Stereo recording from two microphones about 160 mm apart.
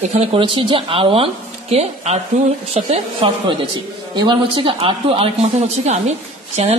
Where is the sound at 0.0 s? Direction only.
35° right (ahead or behind).